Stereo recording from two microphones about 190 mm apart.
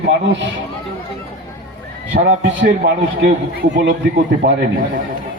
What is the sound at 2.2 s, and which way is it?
Speech, 65° right (ahead or behind).